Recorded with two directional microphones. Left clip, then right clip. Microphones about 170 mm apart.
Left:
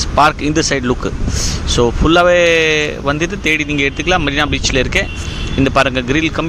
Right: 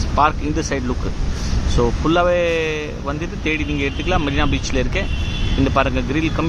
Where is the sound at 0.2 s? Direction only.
20° left (ahead or behind).